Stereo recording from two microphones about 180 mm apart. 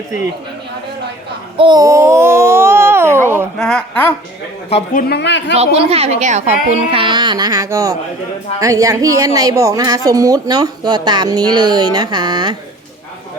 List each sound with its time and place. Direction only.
1.5 s babbling: 25° right (ahead or behind)
3.6 s a sound: 5° left (ahead or behind)
5.0 s speech: 70° left (ahead or behind)
5.5 s a woman's voice: 35° right (ahead or behind)